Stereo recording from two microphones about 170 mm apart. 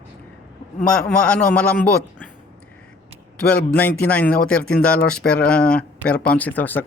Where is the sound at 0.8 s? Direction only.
5° left (ahead or behind).